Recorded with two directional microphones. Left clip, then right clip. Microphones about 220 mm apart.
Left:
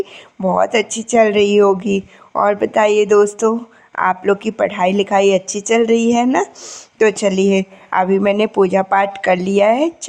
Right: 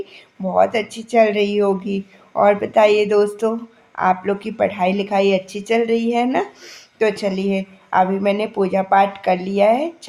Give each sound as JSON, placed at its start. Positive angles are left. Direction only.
{"t": 0.4, "sound": "a woman's voice", "side_deg": 30}